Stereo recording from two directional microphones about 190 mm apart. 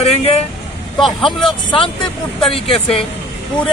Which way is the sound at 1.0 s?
Centre (ahead or behind).